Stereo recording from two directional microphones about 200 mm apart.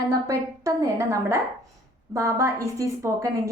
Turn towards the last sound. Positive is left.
turn(degrees=-15)  # may be behind; listen again after turning